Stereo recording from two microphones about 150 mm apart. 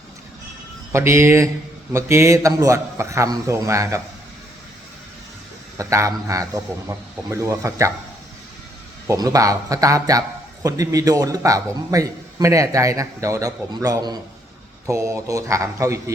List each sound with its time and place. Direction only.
0.9 s a man's voice: 20° right (ahead or behind)
5.7 s a man's voice: 20° right (ahead or behind)
9.0 s a man's voice: 25° right (ahead or behind)